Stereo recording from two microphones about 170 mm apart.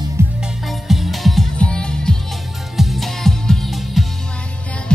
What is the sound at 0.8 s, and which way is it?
Music, centre (ahead or behind).